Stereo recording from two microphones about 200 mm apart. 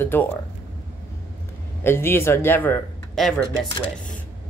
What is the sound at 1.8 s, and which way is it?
Speech, 10° left (ahead or behind).